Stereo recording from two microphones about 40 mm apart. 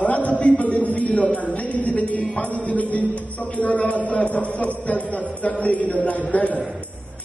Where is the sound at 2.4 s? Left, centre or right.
Left.